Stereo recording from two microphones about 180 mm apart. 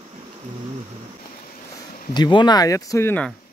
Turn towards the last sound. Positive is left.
turn(degrees=10)  # may be behind; listen again after turning